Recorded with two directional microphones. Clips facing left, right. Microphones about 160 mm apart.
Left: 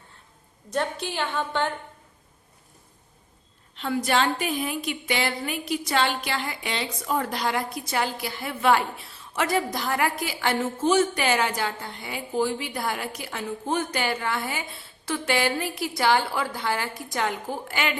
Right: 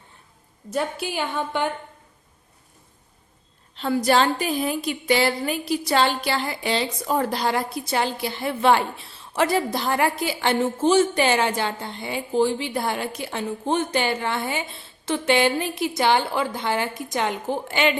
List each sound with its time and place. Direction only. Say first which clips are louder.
0.7 s a woman's voice: right 2 dB; 5° right (ahead or behind)
3.8 s a woman's voice: right 4 dB; 35° right (ahead or behind)